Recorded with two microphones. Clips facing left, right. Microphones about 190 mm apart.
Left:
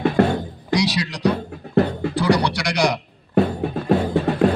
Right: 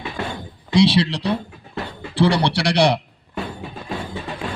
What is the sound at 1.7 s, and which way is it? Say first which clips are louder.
Music: left 13 dB; 60° left (ahead or behind).